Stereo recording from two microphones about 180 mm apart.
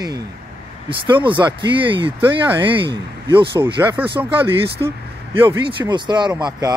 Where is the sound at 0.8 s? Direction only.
25° right (ahead or behind).